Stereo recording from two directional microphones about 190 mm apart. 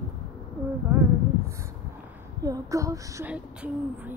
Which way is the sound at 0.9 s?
10° right (ahead or behind).